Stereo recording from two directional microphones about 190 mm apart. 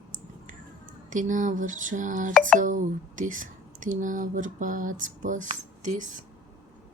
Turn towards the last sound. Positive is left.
turn(degrees=-40)  # may be behind; listen again after turning